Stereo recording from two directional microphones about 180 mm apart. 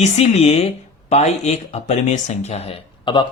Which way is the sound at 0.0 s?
35° left (ahead or behind).